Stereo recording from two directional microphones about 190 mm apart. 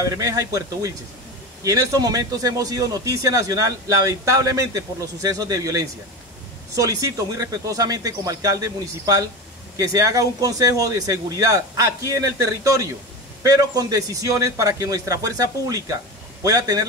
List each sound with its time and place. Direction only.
0.0 s a man's voice: 15° right (ahead or behind)